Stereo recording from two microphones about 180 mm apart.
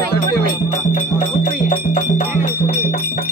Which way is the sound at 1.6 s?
50° left (ahead or behind).